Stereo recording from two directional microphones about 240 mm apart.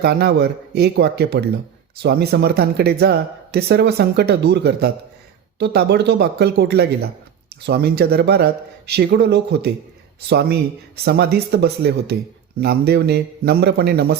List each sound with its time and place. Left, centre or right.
0.0 s a man's voice: right